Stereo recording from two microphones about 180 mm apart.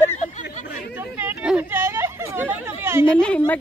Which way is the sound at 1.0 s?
10° right (ahead or behind).